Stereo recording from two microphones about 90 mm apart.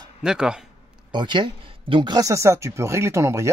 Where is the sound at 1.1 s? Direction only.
60° right (ahead or behind).